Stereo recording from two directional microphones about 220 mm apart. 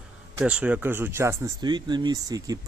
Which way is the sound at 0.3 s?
5° right (ahead or behind).